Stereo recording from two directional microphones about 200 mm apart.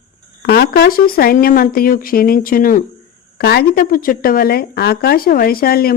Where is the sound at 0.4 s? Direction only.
50° left (ahead or behind).